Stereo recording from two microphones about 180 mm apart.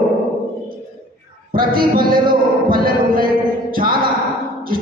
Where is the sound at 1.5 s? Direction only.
55° right (ahead or behind).